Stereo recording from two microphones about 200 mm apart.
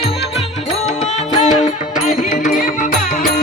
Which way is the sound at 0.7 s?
35° left (ahead or behind).